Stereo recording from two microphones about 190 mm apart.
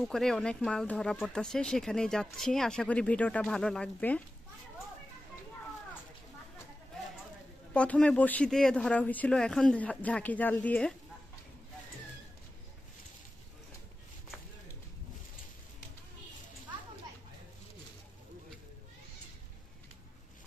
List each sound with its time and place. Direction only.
0.0 s speech: centre (ahead or behind)
7.7 s speech: 5° left (ahead or behind)